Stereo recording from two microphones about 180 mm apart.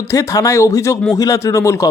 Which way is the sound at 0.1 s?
20° left (ahead or behind).